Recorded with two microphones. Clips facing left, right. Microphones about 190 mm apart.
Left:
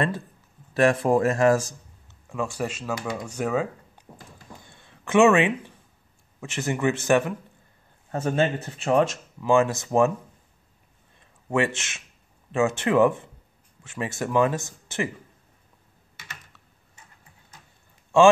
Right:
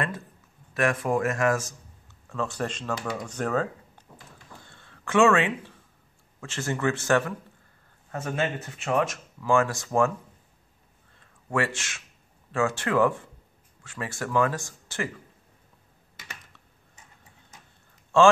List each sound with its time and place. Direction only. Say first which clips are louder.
0.7 s speech: left 5 dB; 30° left (ahead or behind)
2.2 s a man's voice: left 2 dB; 10° left (ahead or behind)
4.1 s speech: left 5 dB; 25° left (ahead or behind)
4.6 s a sound: left 1 dB; 15° left (ahead or behind)
6.4 s a man's voice: left 3 dB; 15° left (ahead or behind)
8.1 s speech: left 5 dB; 30° left (ahead or behind)
9.4 s speech: left 3 dB; 20° left (ahead or behind)
11.1 s a sound: left 3 dB; 20° left (ahead or behind)
12.4 s speech: left 4 dB; 20° left (ahead or behind)
18.1 s a man's voice: left 2 dB; 15° left (ahead or behind)